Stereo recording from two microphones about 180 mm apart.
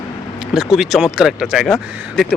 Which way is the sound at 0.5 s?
Centre (ahead or behind).